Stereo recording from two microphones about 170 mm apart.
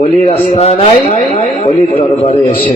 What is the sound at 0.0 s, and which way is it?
A man's voice, 40° left (ahead or behind).